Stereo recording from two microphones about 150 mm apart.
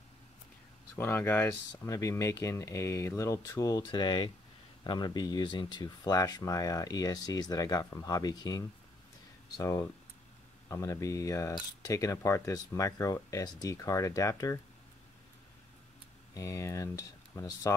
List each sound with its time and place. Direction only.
0.9 s speech: 15° left (ahead or behind)
16.3 s speech: 20° left (ahead or behind)